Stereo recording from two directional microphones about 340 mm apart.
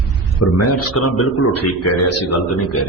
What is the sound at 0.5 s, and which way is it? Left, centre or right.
A man's voice, left.